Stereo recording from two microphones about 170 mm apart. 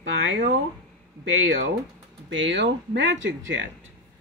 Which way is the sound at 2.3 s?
90° right.